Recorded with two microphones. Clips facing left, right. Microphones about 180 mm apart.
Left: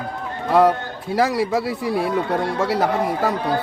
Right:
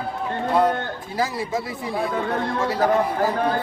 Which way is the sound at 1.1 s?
70° left (ahead or behind).